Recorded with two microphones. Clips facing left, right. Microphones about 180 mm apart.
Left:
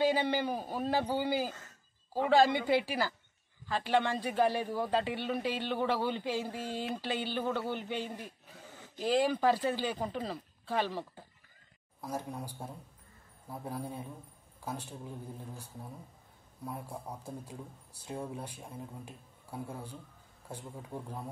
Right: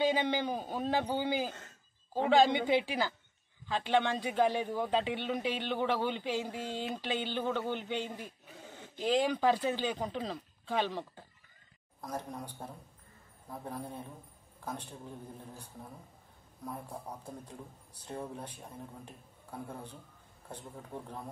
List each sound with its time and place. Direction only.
0.0 s speech: 5° left (ahead or behind)
2.7 s a man's voice: 5° left (ahead or behind)
6.6 s a sound: 20° right (ahead or behind)
7.0 s speech: 10° left (ahead or behind)